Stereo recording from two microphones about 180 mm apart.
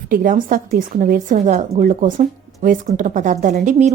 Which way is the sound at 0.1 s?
50° right (ahead or behind).